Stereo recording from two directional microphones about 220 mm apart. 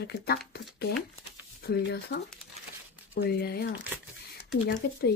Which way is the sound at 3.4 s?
45° left (ahead or behind).